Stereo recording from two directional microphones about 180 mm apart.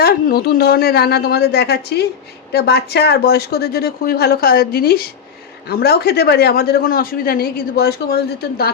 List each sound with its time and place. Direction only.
0.0 s speech: 60° left (ahead or behind)